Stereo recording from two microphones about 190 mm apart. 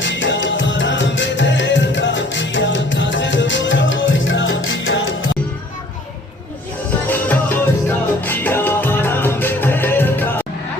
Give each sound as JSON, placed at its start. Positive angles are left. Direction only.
{"t": 0.0, "sound": "music", "side_deg": 75}
{"t": 7.1, "sound": "music", "side_deg": 10}